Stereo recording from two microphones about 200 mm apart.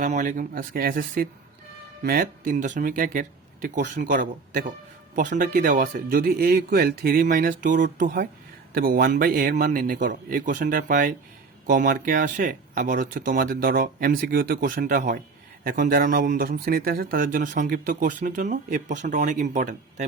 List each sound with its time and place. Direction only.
0.0 s a man's voice: 40° right (ahead or behind)